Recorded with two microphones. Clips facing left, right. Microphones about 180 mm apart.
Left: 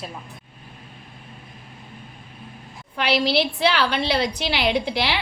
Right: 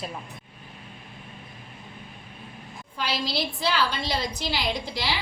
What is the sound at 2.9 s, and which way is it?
A woman's voice, 70° left (ahead or behind).